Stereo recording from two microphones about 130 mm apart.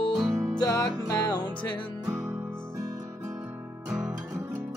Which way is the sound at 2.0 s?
25° right (ahead or behind).